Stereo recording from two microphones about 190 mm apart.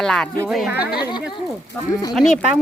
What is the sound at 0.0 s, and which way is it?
Speech, centre (ahead or behind).